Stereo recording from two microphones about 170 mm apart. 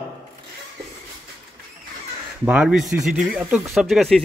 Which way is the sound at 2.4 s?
5° right (ahead or behind).